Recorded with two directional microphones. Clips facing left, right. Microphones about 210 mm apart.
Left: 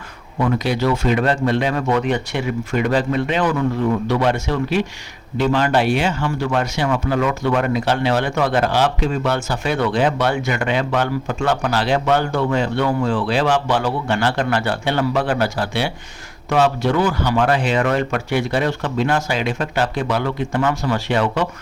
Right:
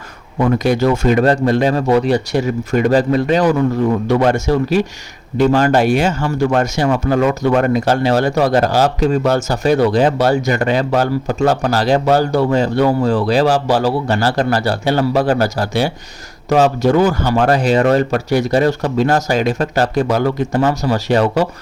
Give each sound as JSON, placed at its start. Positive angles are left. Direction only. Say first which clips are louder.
{"t": 0.4, "sound": "speech", "louder": "right 5 dB", "side_deg": -45}